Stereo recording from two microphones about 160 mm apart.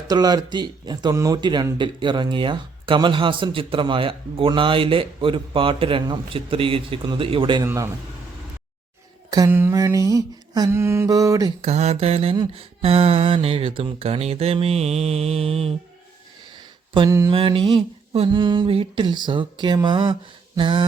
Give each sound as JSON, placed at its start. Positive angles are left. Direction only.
{"t": 0.1, "sound": "speech", "side_deg": -25}
{"t": 7.6, "sound": "mantra", "side_deg": -20}
{"t": 9.3, "sound": "mantra", "side_deg": -15}
{"t": 11.6, "sound": "speech", "side_deg": -40}
{"t": 17.1, "sound": "mantra", "side_deg": -20}
{"t": 17.3, "sound": "speech", "side_deg": -30}
{"t": 20.6, "sound": "mantra", "side_deg": -30}